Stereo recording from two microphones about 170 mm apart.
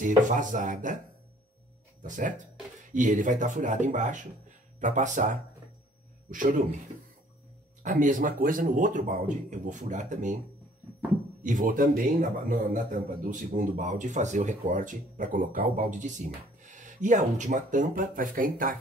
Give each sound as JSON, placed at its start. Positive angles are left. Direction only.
{"t": 0.0, "sound": "a man's voice", "side_deg": -50}
{"t": 2.0, "sound": "a man's voice", "side_deg": -50}
{"t": 7.8, "sound": "a man's voice", "side_deg": -50}
{"t": 11.4, "sound": "a man's voice", "side_deg": -50}